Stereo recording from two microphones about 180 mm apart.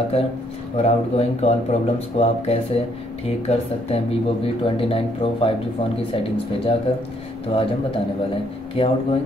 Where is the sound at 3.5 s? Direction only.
35° left (ahead or behind).